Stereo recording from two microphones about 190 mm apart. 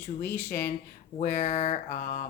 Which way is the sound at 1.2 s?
40° left (ahead or behind).